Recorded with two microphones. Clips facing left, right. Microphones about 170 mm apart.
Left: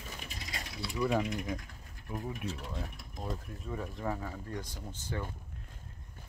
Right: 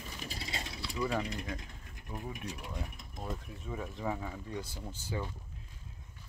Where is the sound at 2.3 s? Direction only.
15° right (ahead or behind).